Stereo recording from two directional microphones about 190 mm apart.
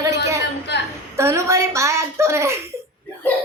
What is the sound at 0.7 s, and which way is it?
Speech, 65° left (ahead or behind).